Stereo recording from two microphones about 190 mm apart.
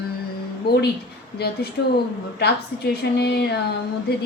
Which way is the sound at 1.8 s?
65° left (ahead or behind).